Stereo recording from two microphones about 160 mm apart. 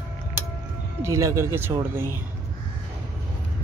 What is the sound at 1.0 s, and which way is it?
Speech, 20° right (ahead or behind).